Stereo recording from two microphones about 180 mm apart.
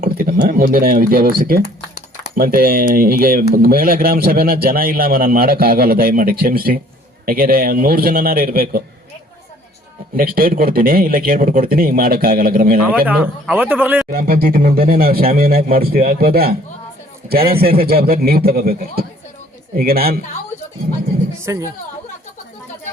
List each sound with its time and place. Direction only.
0.0 s a man's voice: 50° right (ahead or behind)
10.2 s speech: 55° right (ahead or behind)
13.1 s a man's voice: 10° right (ahead or behind)
14.1 s a man's voice: 55° right (ahead or behind)
21.3 s speech: 15° right (ahead or behind)